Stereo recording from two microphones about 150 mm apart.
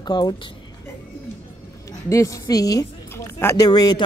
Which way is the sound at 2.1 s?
20° left (ahead or behind).